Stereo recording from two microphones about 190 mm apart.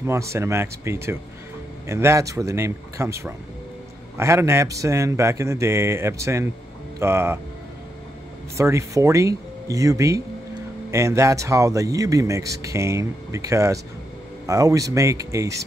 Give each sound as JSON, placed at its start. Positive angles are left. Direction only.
{"t": 0.0, "sound": "speech", "side_deg": -15}
{"t": 8.5, "sound": "speech", "side_deg": -15}